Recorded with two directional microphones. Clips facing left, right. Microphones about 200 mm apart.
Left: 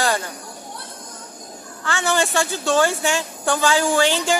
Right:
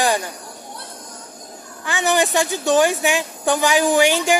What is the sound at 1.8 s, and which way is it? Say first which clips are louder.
A woman's voice: right 2 dB; 15° right (ahead or behind).